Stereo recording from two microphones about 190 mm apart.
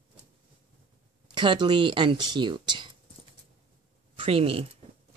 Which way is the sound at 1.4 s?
25° right (ahead or behind).